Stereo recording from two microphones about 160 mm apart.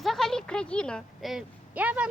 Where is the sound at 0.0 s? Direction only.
Centre (ahead or behind).